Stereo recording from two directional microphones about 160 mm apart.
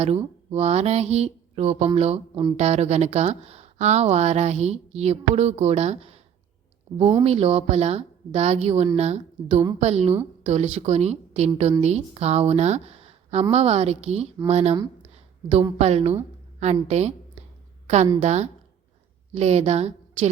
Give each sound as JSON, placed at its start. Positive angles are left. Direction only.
{"t": 0.0, "sound": "speech", "side_deg": -40}
{"t": 7.3, "sound": "speech", "side_deg": -40}
{"t": 15.1, "sound": "a sound", "side_deg": -40}
{"t": 15.8, "sound": "a woman's voice", "side_deg": -40}